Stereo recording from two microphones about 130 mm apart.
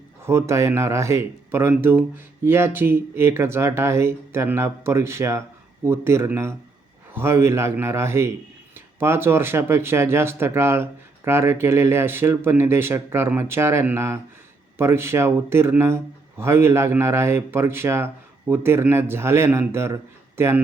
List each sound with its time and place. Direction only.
0.3 s a man's voice: 20° right (ahead or behind)